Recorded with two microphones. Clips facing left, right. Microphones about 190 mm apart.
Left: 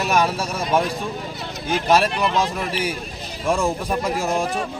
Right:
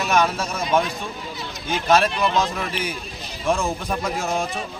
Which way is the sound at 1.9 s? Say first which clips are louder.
Even; 10° left (ahead or behind).